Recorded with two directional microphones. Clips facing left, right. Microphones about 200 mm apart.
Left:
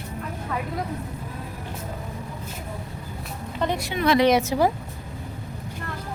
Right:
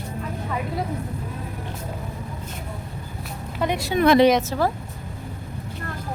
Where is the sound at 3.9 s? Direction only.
50° right (ahead or behind).